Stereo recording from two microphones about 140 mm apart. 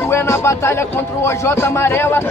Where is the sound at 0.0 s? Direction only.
15° left (ahead or behind).